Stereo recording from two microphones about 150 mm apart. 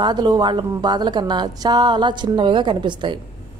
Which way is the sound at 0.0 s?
30° right (ahead or behind).